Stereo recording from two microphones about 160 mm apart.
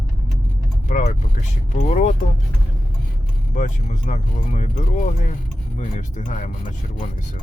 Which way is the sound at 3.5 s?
50° left (ahead or behind).